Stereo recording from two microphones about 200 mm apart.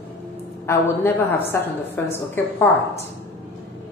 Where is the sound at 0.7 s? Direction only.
10° left (ahead or behind).